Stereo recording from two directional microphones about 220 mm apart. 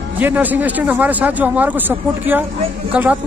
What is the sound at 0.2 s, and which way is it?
Speech, 10° right (ahead or behind).